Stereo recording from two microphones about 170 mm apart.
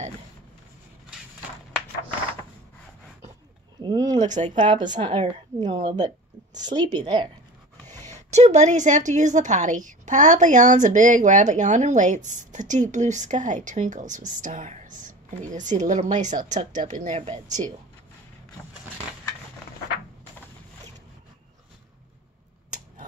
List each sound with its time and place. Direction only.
3.8 s a sound: 20° right (ahead or behind)
4.3 s a woman's voice: 45° right (ahead or behind)
5.0 s a woman's voice: 30° right (ahead or behind)
8.1 s a woman's voice: 40° right (ahead or behind)
17.5 s a woman's voice: 20° right (ahead or behind)